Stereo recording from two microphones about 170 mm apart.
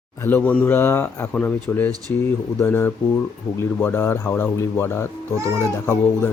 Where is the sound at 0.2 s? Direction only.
10° left (ahead or behind).